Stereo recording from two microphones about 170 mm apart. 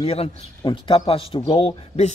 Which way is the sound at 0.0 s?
35° left (ahead or behind).